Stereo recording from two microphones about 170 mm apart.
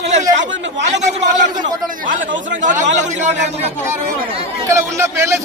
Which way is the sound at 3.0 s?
45° right (ahead or behind).